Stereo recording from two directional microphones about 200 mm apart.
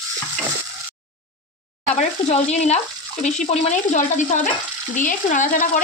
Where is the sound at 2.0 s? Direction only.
35° left (ahead or behind).